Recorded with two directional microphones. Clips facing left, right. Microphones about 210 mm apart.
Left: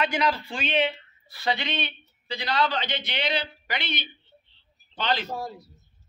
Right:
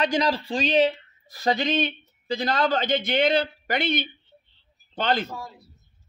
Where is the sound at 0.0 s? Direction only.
35° right (ahead or behind).